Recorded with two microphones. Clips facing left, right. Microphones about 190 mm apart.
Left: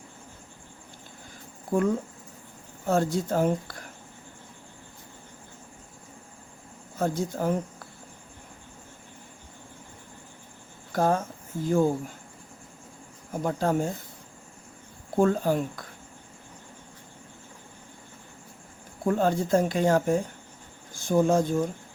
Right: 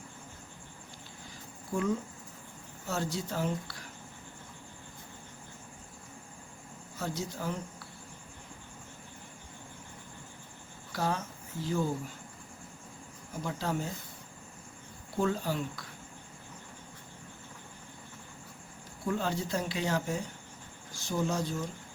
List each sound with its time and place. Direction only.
1.7 s speech: 55° left (ahead or behind)
7.0 s speech: 50° left (ahead or behind)
10.9 s speech: 50° left (ahead or behind)
13.3 s speech: 50° left (ahead or behind)
15.1 s speech: 50° left (ahead or behind)
19.0 s speech: 50° left (ahead or behind)